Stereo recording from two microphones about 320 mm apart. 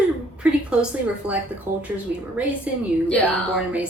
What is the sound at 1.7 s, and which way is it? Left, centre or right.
Speech, right.